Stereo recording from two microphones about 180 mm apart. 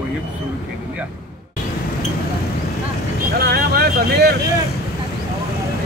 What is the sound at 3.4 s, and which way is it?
Vehicle, 60° right (ahead or behind).